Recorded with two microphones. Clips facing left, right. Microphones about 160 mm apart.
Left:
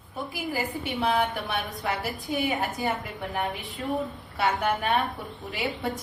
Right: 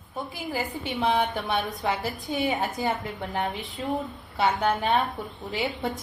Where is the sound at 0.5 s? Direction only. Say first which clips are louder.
Right 1 dB; 20° right (ahead or behind).